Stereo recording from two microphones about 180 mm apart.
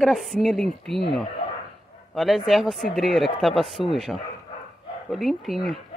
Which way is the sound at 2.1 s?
Centre (ahead or behind).